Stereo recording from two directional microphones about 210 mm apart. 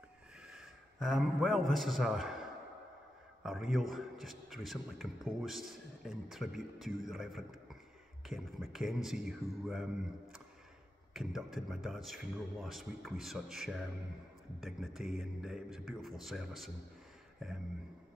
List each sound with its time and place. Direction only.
0.4 s a sound: centre (ahead or behind)
1.7 s a man's voice: centre (ahead or behind)
3.4 s a man's voice: centre (ahead or behind)